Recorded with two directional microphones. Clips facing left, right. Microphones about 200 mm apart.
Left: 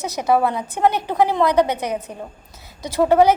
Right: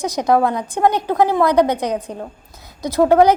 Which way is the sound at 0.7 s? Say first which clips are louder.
Right 2 dB; 15° right (ahead or behind).